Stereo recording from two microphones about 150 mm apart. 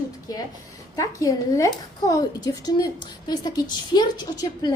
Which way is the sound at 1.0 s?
20° left (ahead or behind).